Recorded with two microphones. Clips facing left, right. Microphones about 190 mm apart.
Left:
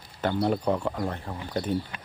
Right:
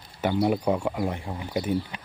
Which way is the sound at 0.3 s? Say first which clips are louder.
Right 2 dB; 10° right (ahead or behind).